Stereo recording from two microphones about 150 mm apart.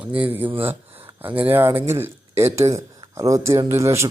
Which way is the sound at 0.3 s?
10° right (ahead or behind).